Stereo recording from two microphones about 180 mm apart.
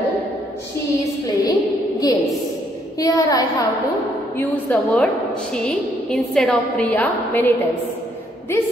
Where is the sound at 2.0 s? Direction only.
20° left (ahead or behind).